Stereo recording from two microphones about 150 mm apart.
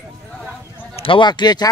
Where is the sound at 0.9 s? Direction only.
35° left (ahead or behind).